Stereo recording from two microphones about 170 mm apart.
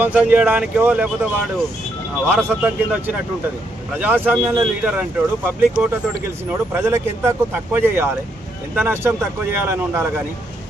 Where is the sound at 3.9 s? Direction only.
10° right (ahead or behind).